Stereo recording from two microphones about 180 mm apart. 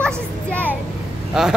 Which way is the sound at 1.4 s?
5° right (ahead or behind).